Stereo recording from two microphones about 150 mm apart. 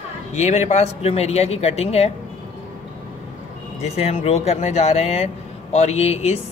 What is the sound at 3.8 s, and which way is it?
Speech, 45° left (ahead or behind).